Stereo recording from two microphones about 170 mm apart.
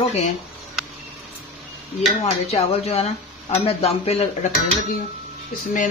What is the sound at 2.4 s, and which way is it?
Speech, 35° left (ahead or behind).